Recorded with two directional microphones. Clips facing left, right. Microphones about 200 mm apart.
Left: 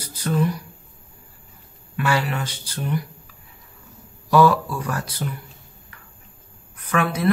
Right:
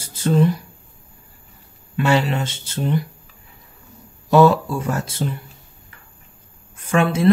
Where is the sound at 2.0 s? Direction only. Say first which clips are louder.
Right 4 dB; 25° right (ahead or behind).